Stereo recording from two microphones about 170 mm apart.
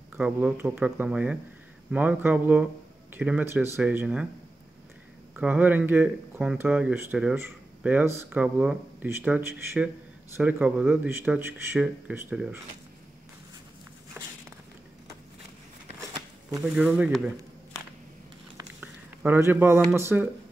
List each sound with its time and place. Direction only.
0.2 s speech: 10° right (ahead or behind)
5.3 s speech: 10° right (ahead or behind)
14.2 s walk: 15° right (ahead or behind)
16.0 s a sound: 20° right (ahead or behind)
16.7 s speech: 5° right (ahead or behind)
18.8 s a sound: 10° right (ahead or behind)
19.9 s speech: 15° right (ahead or behind)